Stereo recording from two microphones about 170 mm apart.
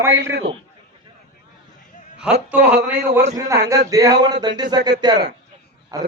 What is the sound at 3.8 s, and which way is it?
A man's voice, 20° right (ahead or behind).